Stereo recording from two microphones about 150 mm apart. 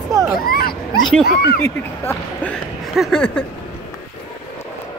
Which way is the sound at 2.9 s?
Centre (ahead or behind).